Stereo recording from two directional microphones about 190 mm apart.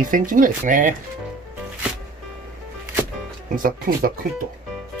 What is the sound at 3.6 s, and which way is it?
Speech, 45° right (ahead or behind).